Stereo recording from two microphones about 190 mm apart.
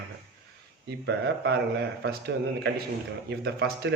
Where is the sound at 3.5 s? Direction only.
60° right (ahead or behind).